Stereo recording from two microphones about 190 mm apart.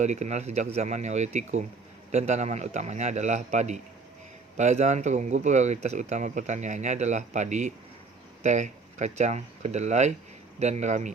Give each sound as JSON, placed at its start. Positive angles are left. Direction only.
{"t": 0.0, "sound": "speech", "side_deg": -35}